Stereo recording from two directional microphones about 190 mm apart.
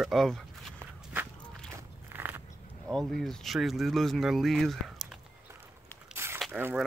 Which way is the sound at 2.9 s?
Centre (ahead or behind).